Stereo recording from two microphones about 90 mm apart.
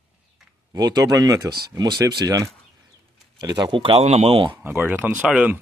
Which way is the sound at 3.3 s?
55° right (ahead or behind).